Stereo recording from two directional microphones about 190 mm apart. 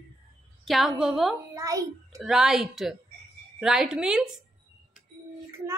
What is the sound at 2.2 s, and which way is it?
Speech, centre (ahead or behind).